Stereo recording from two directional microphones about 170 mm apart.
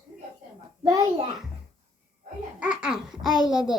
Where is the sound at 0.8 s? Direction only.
20° right (ahead or behind).